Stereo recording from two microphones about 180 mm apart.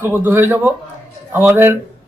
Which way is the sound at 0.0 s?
10° right (ahead or behind).